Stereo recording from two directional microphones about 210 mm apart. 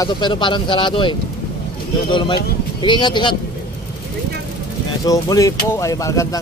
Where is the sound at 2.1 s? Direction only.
20° left (ahead or behind).